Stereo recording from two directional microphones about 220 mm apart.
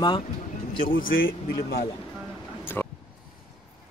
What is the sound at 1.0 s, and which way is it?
Speech, 60° left (ahead or behind).